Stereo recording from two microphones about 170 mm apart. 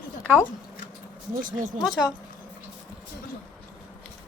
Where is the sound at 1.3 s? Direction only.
55° right (ahead or behind).